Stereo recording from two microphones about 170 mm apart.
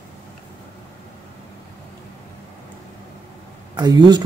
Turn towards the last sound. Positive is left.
turn(degrees=-25)  # may be behind; listen again after turning